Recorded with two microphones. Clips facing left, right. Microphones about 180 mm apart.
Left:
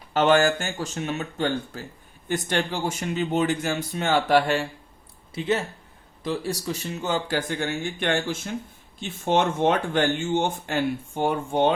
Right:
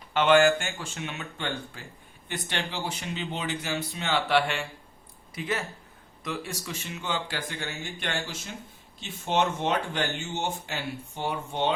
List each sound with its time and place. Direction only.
0.1 s speech: 40° left (ahead or behind)
5.3 s speech: 30° left (ahead or behind); by 11.7 s 50° left (ahead or behind)